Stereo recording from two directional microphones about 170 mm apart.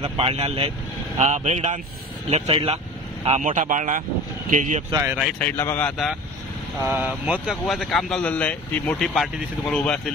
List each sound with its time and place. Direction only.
0.0 s speech: 35° right (ahead or behind)
4.9 s speech: 15° right (ahead or behind)
5.4 s speech: 15° left (ahead or behind)
6.8 s speech: 10° right (ahead or behind)